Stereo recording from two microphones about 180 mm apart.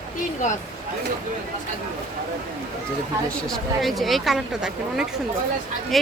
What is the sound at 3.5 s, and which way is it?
Speech, centre (ahead or behind).